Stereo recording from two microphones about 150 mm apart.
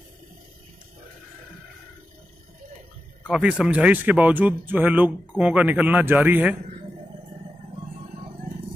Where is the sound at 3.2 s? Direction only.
5° right (ahead or behind).